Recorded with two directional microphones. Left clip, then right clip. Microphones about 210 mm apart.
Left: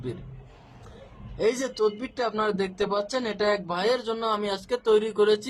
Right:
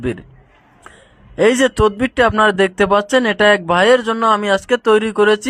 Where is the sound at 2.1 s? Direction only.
25° right (ahead or behind).